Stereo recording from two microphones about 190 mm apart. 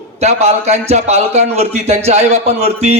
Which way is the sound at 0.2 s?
35° right (ahead or behind).